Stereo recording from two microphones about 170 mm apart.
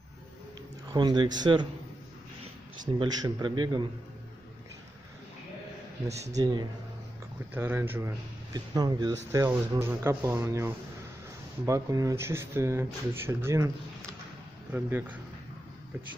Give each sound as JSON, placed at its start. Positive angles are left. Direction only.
{"t": 0.9, "sound": "a man's voice", "side_deg": -25}
{"t": 3.0, "sound": "a man's voice", "side_deg": -25}
{"t": 6.3, "sound": "a man's voice", "side_deg": -20}
{"t": 7.5, "sound": "a man's voice", "side_deg": -10}
{"t": 14.7, "sound": "speech", "side_deg": -10}